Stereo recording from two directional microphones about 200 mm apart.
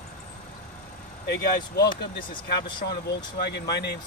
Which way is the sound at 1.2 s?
55° left (ahead or behind).